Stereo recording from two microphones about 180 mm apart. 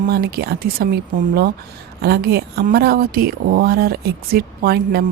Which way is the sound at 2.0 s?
60° right (ahead or behind).